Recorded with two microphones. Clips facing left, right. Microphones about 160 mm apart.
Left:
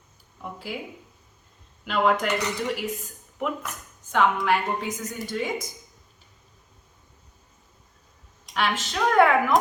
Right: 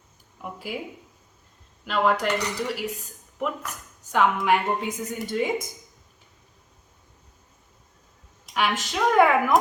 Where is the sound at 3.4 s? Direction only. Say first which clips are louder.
Even; centre (ahead or behind).